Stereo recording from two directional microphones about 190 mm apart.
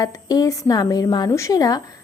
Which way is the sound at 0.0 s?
20° left (ahead or behind).